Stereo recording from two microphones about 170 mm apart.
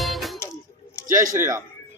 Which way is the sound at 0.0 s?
Centre (ahead or behind).